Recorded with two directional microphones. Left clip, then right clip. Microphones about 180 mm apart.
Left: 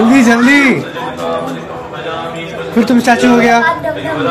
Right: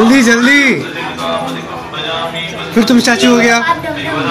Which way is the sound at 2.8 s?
5° left (ahead or behind).